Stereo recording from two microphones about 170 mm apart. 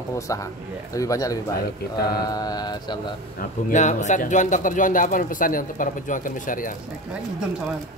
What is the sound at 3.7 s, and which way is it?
Speech, 45° left (ahead or behind).